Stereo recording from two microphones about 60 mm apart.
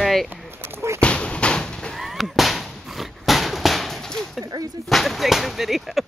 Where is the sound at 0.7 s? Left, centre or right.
Right.